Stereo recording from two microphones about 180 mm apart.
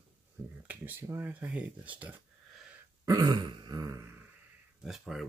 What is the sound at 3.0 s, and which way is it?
Throat clearing, 20° right (ahead or behind).